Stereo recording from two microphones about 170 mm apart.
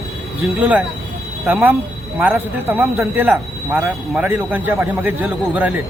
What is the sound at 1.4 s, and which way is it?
Speech, 10° right (ahead or behind).